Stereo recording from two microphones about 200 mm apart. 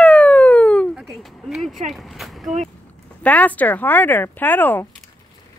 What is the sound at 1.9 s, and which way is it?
Speech, centre (ahead or behind).